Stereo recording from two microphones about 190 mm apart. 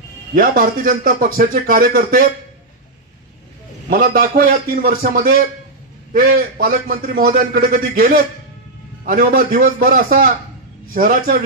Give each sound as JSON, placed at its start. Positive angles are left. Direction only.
{"t": 0.3, "sound": "a man's voice", "side_deg": -45}
{"t": 3.9, "sound": "a man's voice", "side_deg": -45}